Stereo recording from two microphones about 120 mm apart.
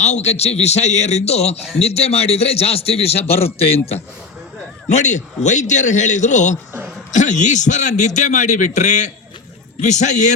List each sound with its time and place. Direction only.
0.0 s a man's voice: 70° left (ahead or behind)
4.9 s a man's voice: 80° left